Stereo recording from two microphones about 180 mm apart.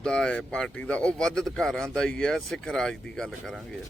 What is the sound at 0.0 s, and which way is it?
Speech, 5° left (ahead or behind).